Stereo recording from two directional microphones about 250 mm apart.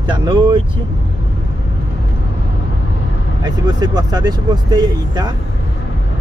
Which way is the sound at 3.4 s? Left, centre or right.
Centre.